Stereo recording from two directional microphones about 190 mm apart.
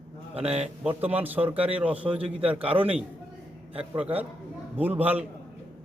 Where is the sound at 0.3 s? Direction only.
30° right (ahead or behind).